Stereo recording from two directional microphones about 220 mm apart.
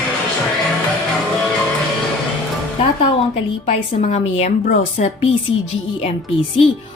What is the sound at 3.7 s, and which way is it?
A woman's voice, 30° left (ahead or behind).